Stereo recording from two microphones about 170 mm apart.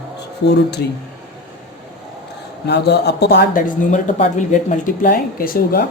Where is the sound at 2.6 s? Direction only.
80° left; by 5.9 s 60° left (ahead or behind).